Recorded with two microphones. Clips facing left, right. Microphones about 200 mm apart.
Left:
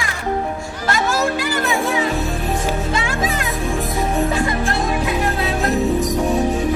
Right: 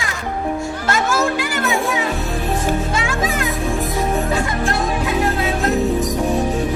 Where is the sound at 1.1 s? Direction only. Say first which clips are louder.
Even; 35° left (ahead or behind).